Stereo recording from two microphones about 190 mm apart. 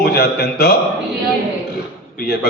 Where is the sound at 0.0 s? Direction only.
55° left (ahead or behind).